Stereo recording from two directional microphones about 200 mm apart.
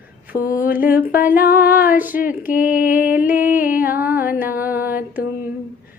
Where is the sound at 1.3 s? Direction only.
45° left (ahead or behind).